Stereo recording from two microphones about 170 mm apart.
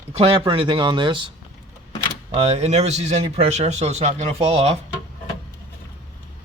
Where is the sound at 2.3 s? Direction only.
40° right (ahead or behind).